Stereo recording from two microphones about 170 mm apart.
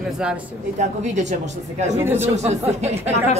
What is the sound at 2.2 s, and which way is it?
Speech, 40° right (ahead or behind).